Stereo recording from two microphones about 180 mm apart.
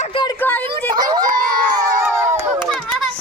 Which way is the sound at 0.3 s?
10° left (ahead or behind).